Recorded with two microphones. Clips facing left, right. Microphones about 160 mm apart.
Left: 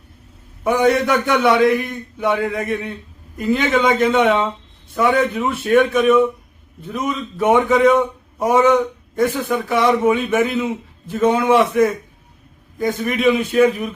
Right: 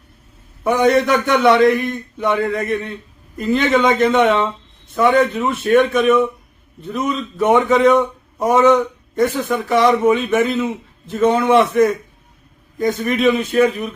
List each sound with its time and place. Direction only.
0.6 s a man's voice: 5° left (ahead or behind)